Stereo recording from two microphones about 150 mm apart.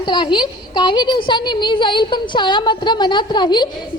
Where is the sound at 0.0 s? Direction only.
30° left (ahead or behind).